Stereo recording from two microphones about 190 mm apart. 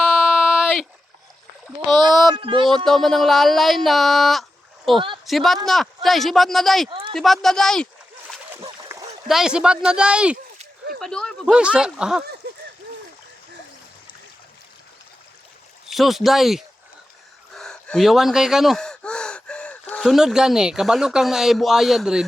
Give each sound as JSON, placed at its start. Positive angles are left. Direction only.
{"t": 0.0, "sound": "a sound", "side_deg": -5}
{"t": 1.9, "sound": "a sound", "side_deg": -20}
{"t": 2.3, "sound": "speech", "side_deg": -25}
{"t": 2.6, "sound": "speech", "side_deg": 0}
{"t": 4.9, "sound": "speech", "side_deg": -25}
{"t": 5.2, "sound": "speech", "side_deg": 0}
{"t": 6.8, "sound": "speech", "side_deg": -25}
{"t": 7.1, "sound": "speech", "side_deg": 0}
{"t": 8.6, "sound": "a sound", "side_deg": -20}
{"t": 9.2, "sound": "speech", "side_deg": 0}
{"t": 15.9, "sound": "speech", "side_deg": 0}